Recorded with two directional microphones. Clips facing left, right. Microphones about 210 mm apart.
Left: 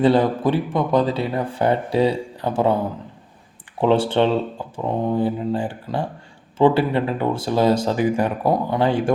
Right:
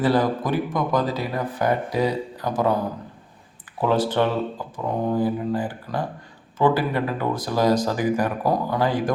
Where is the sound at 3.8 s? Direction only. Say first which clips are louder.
Left 3 dB; 25° left (ahead or behind).